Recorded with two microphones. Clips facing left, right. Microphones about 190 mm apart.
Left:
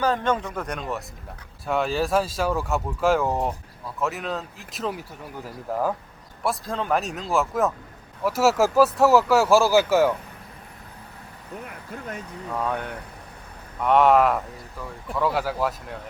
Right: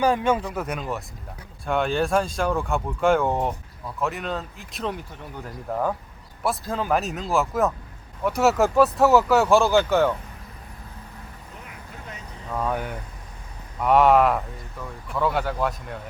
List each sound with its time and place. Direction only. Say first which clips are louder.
0.0 s speech: right 2 dB; 10° right (ahead or behind); by 10.2 s 5° left (ahead or behind)
11.6 s vehicle: left 5 dB; 50° left (ahead or behind)
12.5 s speech: right 1 dB; 5° right (ahead or behind)